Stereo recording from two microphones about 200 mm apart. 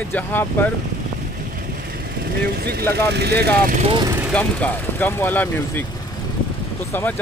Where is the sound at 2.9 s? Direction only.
55° right (ahead or behind).